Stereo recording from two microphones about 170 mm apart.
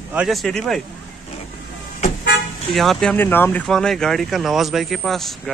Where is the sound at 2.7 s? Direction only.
Centre (ahead or behind).